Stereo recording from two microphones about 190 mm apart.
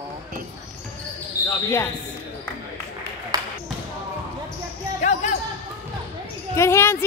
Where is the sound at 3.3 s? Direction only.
20° right (ahead or behind).